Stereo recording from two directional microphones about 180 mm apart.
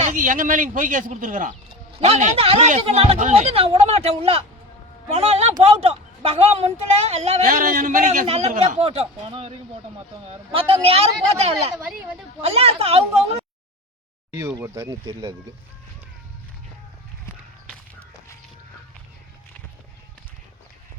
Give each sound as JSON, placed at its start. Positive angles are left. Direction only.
{"t": 0.0, "sound": "a man's voice", "side_deg": -45}
{"t": 1.9, "sound": "a woman's voice", "side_deg": -35}
{"t": 8.3, "sound": "a woman's voice", "side_deg": -35}
{"t": 14.3, "sound": "speech", "side_deg": -15}